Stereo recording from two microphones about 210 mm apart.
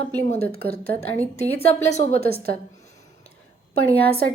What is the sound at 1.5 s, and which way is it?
Speech, 30° left (ahead or behind).